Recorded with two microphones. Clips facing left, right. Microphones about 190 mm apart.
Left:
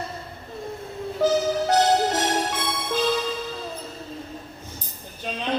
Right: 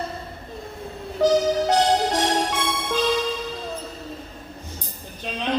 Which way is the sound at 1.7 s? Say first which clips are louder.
Left 3 dB; 10° left (ahead or behind).